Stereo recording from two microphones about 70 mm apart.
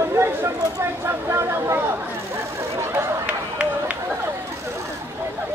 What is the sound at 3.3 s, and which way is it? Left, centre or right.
Run, centre.